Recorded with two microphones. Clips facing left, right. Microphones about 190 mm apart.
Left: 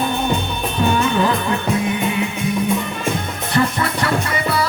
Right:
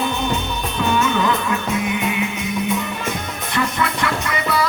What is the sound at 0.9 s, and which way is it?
Music, 30° left (ahead or behind).